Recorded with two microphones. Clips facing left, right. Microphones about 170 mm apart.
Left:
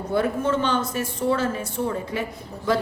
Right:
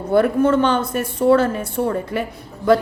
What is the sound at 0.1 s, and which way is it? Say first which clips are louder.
A woman's voice: right 8 dB; 60° right (ahead or behind).